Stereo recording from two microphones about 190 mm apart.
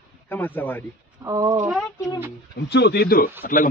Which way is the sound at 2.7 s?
60° left (ahead or behind).